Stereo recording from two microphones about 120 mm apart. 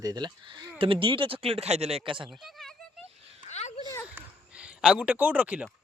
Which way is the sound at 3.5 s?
70° left (ahead or behind).